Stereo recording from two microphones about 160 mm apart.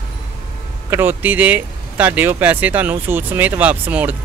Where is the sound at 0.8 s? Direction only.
15° right (ahead or behind).